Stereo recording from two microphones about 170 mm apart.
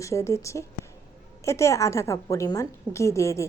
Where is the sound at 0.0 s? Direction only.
15° left (ahead or behind).